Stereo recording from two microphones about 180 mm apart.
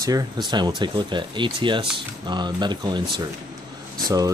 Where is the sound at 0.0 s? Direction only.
20° right (ahead or behind).